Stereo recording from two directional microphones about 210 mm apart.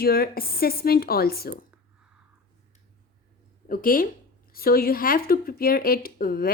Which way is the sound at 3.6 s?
40° left (ahead or behind).